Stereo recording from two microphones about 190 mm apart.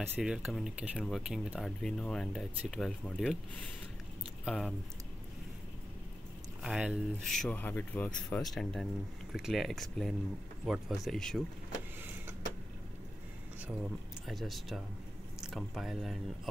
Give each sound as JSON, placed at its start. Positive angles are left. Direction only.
{"t": 0.0, "sound": "speech", "side_deg": 0}
{"t": 4.5, "sound": "speech", "side_deg": 0}
{"t": 6.6, "sound": "speech", "side_deg": -5}
{"t": 14.2, "sound": "speech", "side_deg": 0}